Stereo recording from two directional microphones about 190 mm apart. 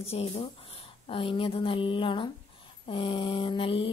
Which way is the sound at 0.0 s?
30° left (ahead or behind).